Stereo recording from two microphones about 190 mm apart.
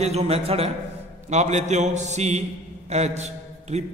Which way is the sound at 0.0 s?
35° right (ahead or behind).